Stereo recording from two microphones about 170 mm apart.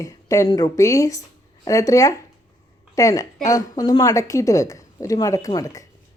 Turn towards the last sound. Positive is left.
turn(degrees=20)  # may be behind; listen again after turning